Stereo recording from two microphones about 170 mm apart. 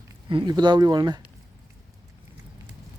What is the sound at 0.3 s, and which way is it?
Speech, 25° right (ahead or behind).